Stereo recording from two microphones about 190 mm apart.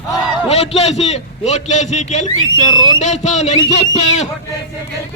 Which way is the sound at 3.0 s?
35° left (ahead or behind).